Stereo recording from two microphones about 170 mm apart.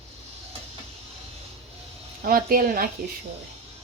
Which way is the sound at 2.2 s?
55° right (ahead or behind).